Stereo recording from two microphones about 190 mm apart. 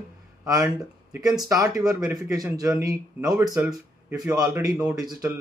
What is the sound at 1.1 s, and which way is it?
A man's voice, 20° right (ahead or behind).